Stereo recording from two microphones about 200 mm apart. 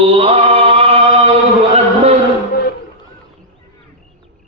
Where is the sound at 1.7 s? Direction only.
30° right (ahead or behind).